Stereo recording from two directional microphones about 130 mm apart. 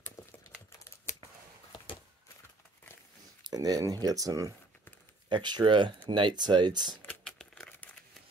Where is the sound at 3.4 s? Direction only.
30° right (ahead or behind).